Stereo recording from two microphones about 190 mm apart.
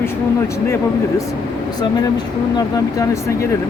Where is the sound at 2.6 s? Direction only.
15° left (ahead or behind).